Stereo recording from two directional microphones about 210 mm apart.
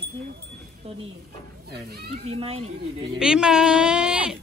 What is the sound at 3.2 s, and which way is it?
Speech, 5° right (ahead or behind).